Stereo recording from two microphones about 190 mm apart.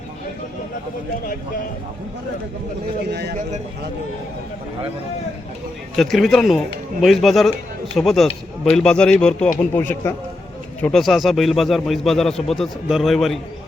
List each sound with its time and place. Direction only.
3.1 s speech: 60° right (ahead or behind)
6.0 s a man's voice: centre (ahead or behind)